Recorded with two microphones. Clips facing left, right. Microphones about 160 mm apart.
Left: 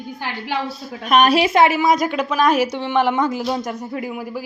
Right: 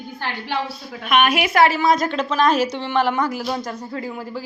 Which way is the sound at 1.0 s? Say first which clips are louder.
Left 3 dB; 40° left (ahead or behind).